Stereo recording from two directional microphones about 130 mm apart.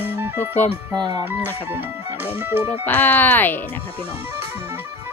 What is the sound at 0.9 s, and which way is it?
Speech, 30° right (ahead or behind).